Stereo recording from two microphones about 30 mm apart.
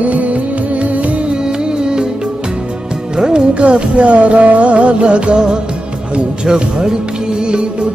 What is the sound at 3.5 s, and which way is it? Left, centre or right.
Music, right.